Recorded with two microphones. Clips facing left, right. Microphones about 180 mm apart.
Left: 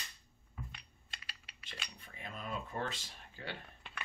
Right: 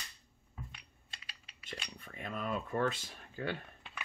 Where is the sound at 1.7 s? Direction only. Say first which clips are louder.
Right 5 dB; 55° right (ahead or behind).